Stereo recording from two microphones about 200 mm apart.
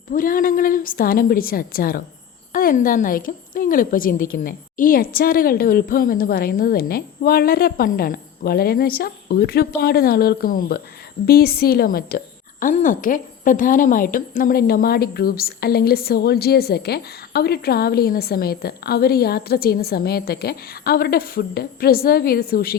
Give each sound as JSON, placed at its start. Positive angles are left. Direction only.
{"t": 0.1, "sound": "a woman's voice", "side_deg": 45}